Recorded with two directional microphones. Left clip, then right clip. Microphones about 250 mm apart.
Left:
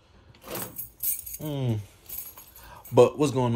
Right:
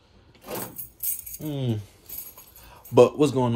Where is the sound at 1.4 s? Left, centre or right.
Centre.